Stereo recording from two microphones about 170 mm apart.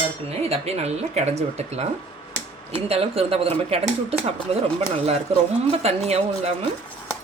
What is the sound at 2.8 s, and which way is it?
Speech, 35° right (ahead or behind).